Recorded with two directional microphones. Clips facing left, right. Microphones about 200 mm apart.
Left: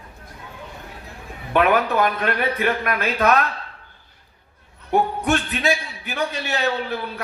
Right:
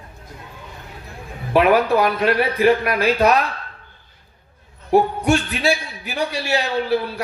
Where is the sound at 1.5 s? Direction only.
35° right (ahead or behind).